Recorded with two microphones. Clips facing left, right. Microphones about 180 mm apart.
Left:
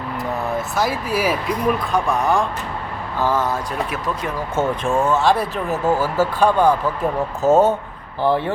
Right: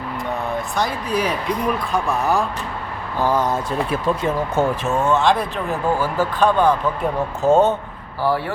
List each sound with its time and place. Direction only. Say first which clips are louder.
0.8 s speech: left 1 dB; 5° left (ahead or behind)
3.2 s speech: right 1 dB; 15° right (ahead or behind)
4.5 s speech: left 4 dB; 10° right (ahead or behind); by 7.8 s 5° left (ahead or behind)
8.2 s speech: left 2 dB; 20° left (ahead or behind)